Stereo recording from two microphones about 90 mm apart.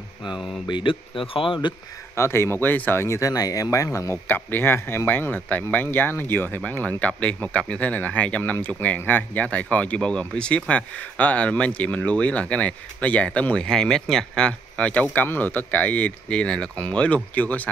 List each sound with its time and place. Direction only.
0.7 s speech: 65° left (ahead or behind)
2.1 s speech: 30° left (ahead or behind)
4.3 s speech: 25° left (ahead or behind)